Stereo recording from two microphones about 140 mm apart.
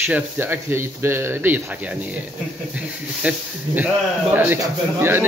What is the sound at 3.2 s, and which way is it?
A man's voice, 10° right (ahead or behind).